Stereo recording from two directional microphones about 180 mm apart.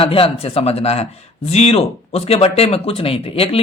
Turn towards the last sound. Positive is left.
turn(degrees=30)  # may be behind; listen again after turning